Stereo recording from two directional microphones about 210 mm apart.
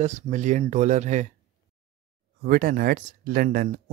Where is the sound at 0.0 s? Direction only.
35° right (ahead or behind).